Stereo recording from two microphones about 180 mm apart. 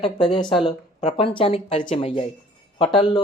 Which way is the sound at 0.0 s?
30° left (ahead or behind).